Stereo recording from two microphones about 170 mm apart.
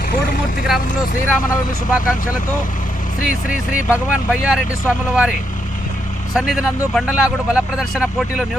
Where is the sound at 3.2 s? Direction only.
50° left (ahead or behind).